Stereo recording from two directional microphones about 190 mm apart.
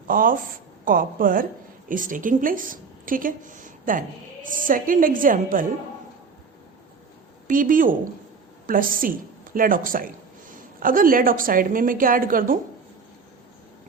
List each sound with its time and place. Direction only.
0.1 s a woman's voice: 45° right (ahead or behind)
7.4 s a woman's voice: 45° right (ahead or behind)